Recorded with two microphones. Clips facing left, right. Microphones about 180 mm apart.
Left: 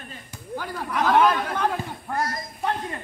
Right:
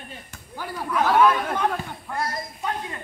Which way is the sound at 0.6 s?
10° right (ahead or behind).